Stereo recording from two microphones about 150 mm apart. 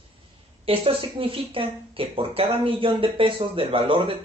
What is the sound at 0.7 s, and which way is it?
Speech, 40° right (ahead or behind).